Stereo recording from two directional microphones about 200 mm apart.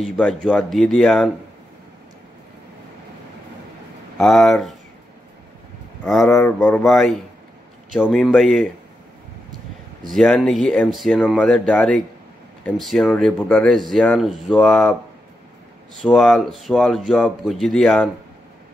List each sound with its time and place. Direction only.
0.0 s speech: 5° left (ahead or behind)
4.2 s speech: centre (ahead or behind)
6.0 s speech: 5° left (ahead or behind)
10.1 s speech: 5° left (ahead or behind)
16.0 s speech: centre (ahead or behind)